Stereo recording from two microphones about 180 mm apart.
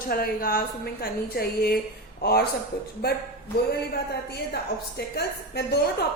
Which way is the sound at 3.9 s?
60° left (ahead or behind).